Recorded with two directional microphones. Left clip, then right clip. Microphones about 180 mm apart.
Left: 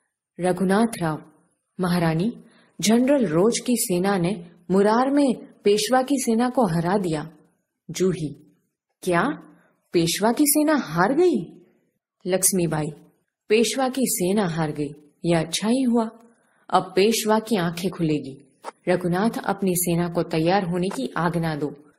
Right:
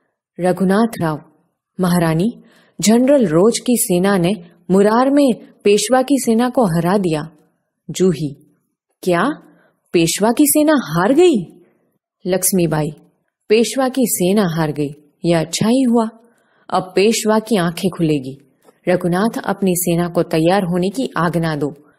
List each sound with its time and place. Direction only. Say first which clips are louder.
0.4 s a woman's voice: right 6 dB; 30° right (ahead or behind)